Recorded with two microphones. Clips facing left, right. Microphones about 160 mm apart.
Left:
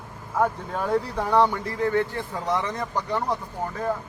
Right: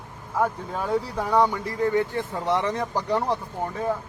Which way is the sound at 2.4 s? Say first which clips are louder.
Right 2 dB; 30° right (ahead or behind).